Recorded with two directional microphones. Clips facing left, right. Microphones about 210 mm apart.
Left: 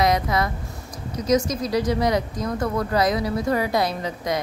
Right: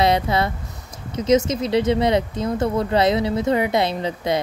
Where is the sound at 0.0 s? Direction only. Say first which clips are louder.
Right 2 dB; 30° right (ahead or behind).